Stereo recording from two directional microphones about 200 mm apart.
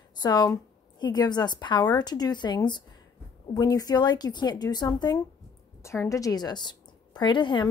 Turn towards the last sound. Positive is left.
turn(degrees=25)  # may be behind; listen again after turning